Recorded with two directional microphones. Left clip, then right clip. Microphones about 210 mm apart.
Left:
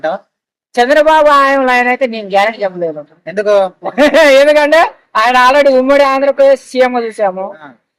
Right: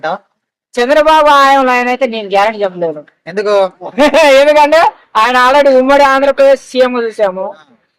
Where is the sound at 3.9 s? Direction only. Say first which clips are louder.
Even; 5° right (ahead or behind).